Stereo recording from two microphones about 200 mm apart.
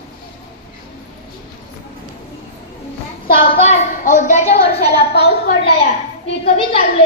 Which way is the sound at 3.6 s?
35° left (ahead or behind).